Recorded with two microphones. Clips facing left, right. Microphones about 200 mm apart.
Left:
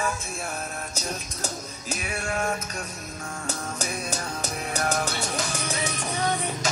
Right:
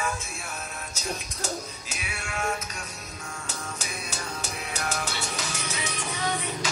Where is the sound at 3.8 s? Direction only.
40° left (ahead or behind).